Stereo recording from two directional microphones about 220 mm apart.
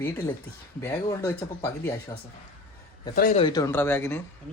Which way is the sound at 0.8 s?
15° left (ahead or behind).